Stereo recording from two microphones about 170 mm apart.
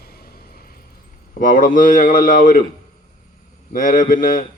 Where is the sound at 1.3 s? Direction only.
55° left (ahead or behind).